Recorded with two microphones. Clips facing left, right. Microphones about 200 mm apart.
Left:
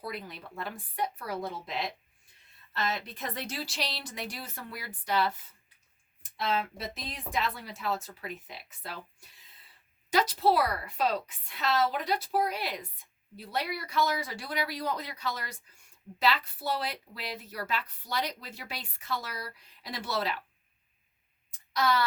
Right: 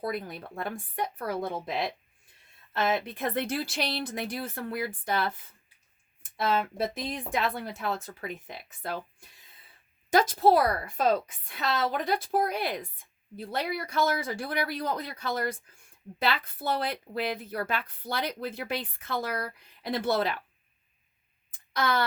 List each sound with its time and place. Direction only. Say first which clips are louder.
0.0 s a woman's voice: right 6 dB; 50° right (ahead or behind)
2.7 s a woman's voice: right 6 dB; 55° right (ahead or behind)
6.3 s a woman's voice: right 4 dB; 55° right (ahead or behind)
10.1 s a woman's voice: right 4 dB; 50° right (ahead or behind)
21.7 s tick: even; 50° right (ahead or behind)